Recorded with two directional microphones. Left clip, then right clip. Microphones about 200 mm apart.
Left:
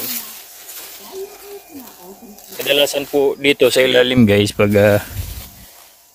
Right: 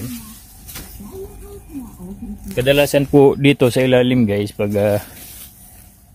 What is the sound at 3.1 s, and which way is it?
Speech, 25° right (ahead or behind).